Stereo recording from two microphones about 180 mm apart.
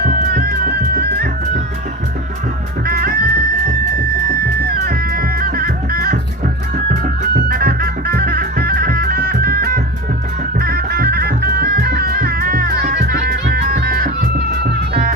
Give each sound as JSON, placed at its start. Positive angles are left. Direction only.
{"t": 0.0, "sound": "music", "side_deg": -60}
{"t": 2.8, "sound": "music", "side_deg": -55}
{"t": 4.7, "sound": "music", "side_deg": -55}